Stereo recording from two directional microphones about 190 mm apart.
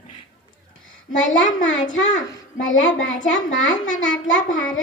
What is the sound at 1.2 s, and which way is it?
Speech, 40° left (ahead or behind).